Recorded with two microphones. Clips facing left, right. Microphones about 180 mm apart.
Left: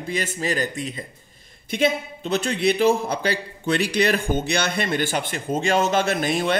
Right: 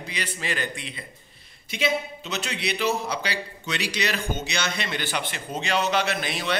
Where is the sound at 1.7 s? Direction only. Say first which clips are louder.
Left 4 dB; 55° left (ahead or behind).